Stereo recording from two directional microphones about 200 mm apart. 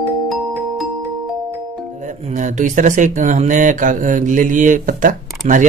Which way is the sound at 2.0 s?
40° right (ahead or behind).